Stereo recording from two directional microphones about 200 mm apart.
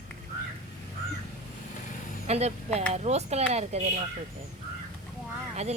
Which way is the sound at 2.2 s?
30° right (ahead or behind).